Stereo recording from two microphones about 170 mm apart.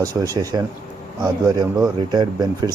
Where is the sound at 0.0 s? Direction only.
20° right (ahead or behind).